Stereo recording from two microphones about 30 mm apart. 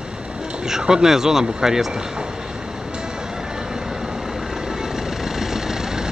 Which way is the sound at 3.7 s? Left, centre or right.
Right.